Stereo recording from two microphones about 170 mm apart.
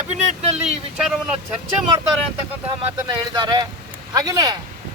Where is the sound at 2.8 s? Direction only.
25° right (ahead or behind).